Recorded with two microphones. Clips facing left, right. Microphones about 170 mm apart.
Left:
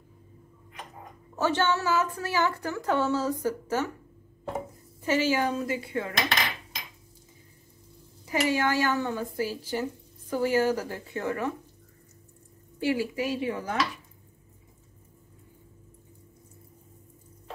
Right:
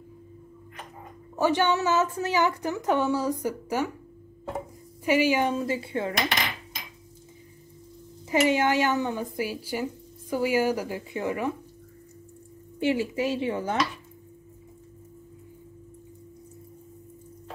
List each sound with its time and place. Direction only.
1.3 s a woman's voice: 15° right (ahead or behind)
5.0 s speech: 15° right (ahead or behind)
8.3 s a woman's voice: 20° right (ahead or behind)
12.7 s speech: 20° right (ahead or behind)